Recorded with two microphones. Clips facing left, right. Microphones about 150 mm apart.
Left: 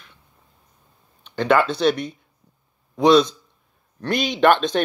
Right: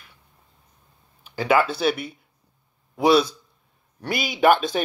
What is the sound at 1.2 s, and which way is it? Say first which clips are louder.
A man's voice: left 2 dB; 5° right (ahead or behind).